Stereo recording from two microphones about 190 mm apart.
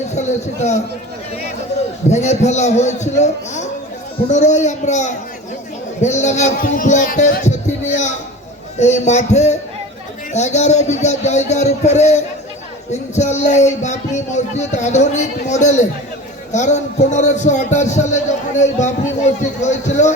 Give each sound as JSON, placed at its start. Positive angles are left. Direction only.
{"t": 0.1, "sound": "a man's voice", "side_deg": 35}
{"t": 2.0, "sound": "a man's voice", "side_deg": 35}